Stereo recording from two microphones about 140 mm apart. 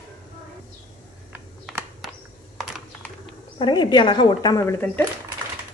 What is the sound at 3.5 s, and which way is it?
Speech, 35° left (ahead or behind).